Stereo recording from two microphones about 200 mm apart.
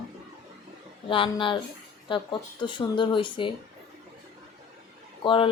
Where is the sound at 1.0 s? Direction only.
25° left (ahead or behind).